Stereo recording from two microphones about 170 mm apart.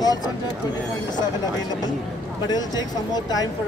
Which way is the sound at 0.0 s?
25° left (ahead or behind).